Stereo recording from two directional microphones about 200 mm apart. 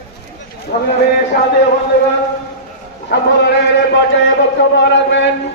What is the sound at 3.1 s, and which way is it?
Speech, 55° left (ahead or behind).